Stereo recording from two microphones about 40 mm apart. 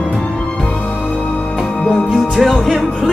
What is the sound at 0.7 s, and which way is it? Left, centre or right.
Music, left.